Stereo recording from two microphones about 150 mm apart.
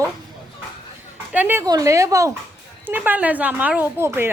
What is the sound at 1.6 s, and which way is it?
Speech, 25° right (ahead or behind).